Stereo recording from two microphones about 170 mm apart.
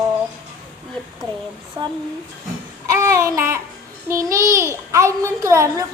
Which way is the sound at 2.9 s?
20° right (ahead or behind).